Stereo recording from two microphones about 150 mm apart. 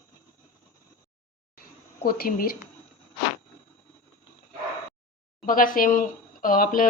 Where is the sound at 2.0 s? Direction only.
80° left.